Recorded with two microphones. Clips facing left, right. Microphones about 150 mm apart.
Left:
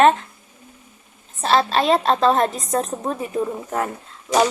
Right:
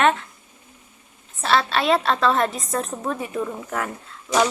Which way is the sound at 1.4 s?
35° left (ahead or behind).